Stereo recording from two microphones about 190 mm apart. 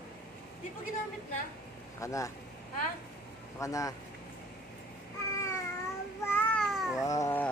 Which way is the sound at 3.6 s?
15° left (ahead or behind).